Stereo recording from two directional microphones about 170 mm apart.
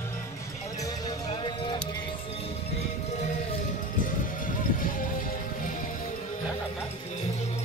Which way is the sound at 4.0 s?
55° left (ahead or behind).